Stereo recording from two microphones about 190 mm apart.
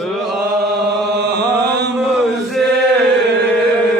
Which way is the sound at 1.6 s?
60° right (ahead or behind).